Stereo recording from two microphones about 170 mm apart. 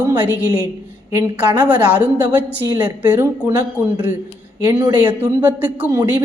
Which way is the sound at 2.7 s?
20° right (ahead or behind).